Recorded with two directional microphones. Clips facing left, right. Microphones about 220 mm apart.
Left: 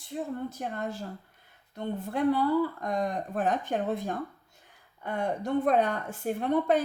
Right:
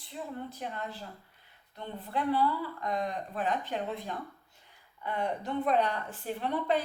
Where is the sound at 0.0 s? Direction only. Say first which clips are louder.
Left 6 dB; 45° left (ahead or behind).